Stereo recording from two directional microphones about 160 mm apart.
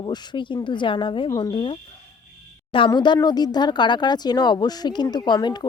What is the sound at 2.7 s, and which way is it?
Speech, 30° left (ahead or behind).